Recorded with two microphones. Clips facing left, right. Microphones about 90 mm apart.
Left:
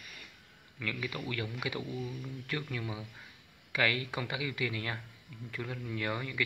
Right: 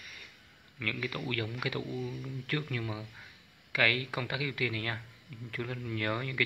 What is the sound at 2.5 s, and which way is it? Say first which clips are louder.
Speech: right 2 dB; 20° left (ahead or behind).